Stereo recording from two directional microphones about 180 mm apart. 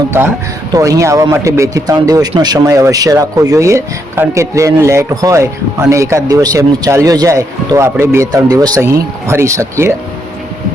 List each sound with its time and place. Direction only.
0.7 s a man's voice: 20° right (ahead or behind)